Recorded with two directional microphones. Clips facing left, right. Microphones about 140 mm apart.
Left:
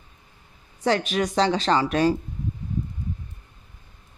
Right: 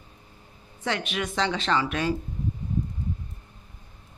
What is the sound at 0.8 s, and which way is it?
Speech, 35° left (ahead or behind).